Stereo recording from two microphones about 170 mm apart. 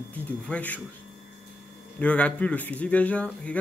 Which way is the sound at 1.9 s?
10° left (ahead or behind).